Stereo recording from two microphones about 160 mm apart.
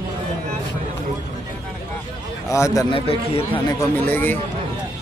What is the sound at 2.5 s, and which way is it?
Speech, 20° left (ahead or behind).